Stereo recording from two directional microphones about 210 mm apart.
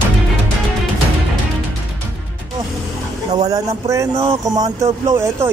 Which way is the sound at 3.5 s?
15° right (ahead or behind).